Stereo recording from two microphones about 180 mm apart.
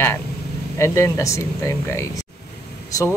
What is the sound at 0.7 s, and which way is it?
Speech, 15° left (ahead or behind).